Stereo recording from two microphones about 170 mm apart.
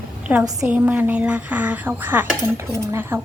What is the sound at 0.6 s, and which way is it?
Speech, 10° right (ahead or behind).